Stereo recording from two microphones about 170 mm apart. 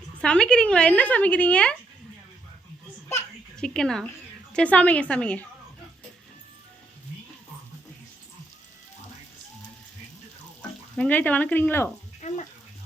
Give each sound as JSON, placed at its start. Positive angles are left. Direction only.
{"t": 0.2, "sound": "speech", "side_deg": 5}
{"t": 3.6, "sound": "a woman's voice", "side_deg": 5}
{"t": 10.9, "sound": "speech", "side_deg": 10}
{"t": 12.2, "sound": "bathtub", "side_deg": 40}